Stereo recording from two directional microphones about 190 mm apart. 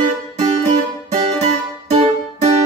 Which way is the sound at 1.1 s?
35° right (ahead or behind).